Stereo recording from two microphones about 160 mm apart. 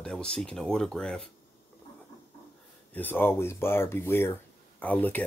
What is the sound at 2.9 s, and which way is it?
Speech, 10° left (ahead or behind).